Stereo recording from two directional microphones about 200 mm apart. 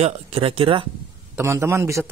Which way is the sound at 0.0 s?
30° right (ahead or behind).